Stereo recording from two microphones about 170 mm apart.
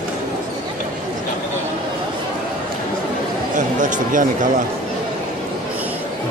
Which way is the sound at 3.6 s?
50° right (ahead or behind).